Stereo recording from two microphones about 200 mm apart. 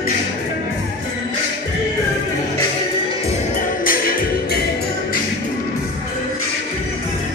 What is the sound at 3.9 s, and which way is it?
Music, 45° left (ahead or behind).